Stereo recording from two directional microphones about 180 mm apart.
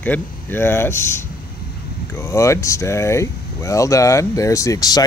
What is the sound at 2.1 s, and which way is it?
Speech, 15° left (ahead or behind).